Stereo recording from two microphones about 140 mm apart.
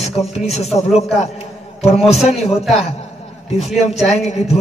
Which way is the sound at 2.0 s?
Centre (ahead or behind).